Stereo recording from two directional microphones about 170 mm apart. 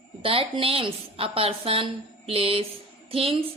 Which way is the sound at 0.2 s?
30° right (ahead or behind).